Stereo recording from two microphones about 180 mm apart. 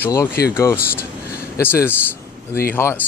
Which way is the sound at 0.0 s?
15° left (ahead or behind).